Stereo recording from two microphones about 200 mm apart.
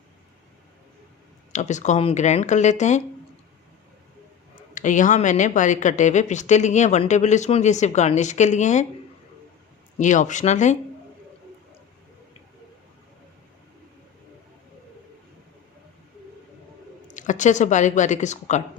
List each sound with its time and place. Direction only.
1.5 s a woman's voice: 35° left (ahead or behind)
4.7 s a woman's voice: 40° left (ahead or behind)
10.0 s a woman's voice: 40° left (ahead or behind)
17.1 s speech: 40° left (ahead or behind)